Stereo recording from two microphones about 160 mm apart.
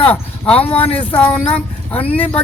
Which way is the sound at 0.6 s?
35° left (ahead or behind).